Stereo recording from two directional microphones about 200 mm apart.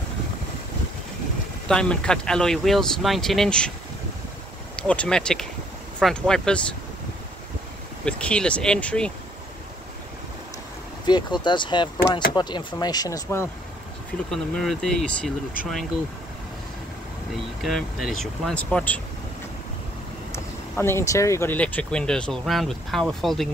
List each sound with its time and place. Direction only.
1.7 s speech: 5° left (ahead or behind)
4.7 s speech: 5° left (ahead or behind)
8.0 s speech: 5° left (ahead or behind)
11.1 s speech: 20° left (ahead or behind)
14.3 s speech: centre (ahead or behind)
17.6 s speech: centre (ahead or behind)
20.3 s speech: 10° left (ahead or behind)